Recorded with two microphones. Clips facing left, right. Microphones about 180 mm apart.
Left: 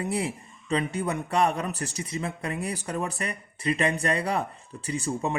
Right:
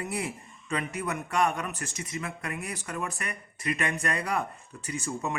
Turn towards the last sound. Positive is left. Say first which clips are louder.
# left 4 dB
turn(degrees=30)  # may be behind; listen again after turning